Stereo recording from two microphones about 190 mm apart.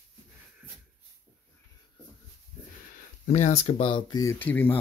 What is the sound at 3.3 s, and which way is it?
Speech, 35° left (ahead or behind).